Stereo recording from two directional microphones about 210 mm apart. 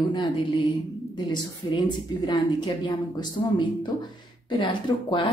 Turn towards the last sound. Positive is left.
turn(degrees=25)  # may be behind; listen again after turning